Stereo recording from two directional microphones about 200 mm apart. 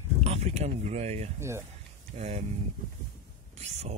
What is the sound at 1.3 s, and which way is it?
Speech, 15° right (ahead or behind).